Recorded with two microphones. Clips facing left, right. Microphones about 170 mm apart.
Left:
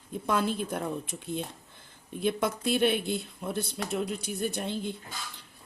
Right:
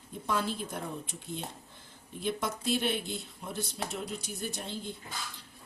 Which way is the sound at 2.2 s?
60° left (ahead or behind).